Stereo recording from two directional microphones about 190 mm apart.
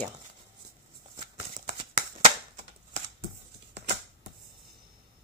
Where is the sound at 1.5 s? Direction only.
35° right (ahead or behind).